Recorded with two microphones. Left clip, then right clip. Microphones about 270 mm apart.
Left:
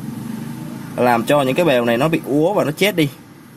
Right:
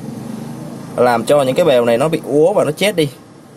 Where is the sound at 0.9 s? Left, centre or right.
Centre.